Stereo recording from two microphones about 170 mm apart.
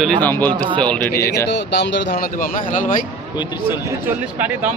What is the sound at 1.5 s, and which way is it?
Speech, 90° left.